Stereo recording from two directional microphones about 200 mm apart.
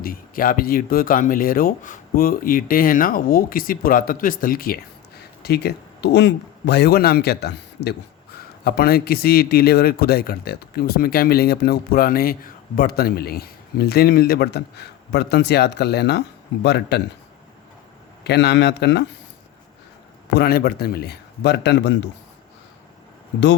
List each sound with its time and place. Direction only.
0.0 s a man's voice: 45° left (ahead or behind)
18.2 s a man's voice: 55° left (ahead or behind)
20.3 s a man's voice: 50° left (ahead or behind)